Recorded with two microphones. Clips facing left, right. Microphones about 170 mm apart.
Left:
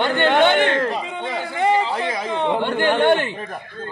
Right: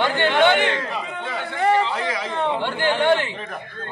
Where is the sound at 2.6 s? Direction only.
50° left (ahead or behind).